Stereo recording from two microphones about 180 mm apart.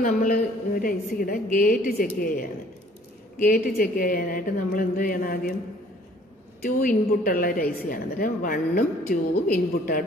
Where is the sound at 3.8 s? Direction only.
50° left (ahead or behind).